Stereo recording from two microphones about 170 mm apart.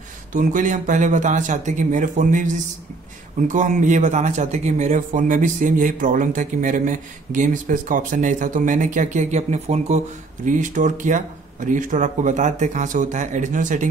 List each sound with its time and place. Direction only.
0.3 s a man's voice: 50° right (ahead or behind)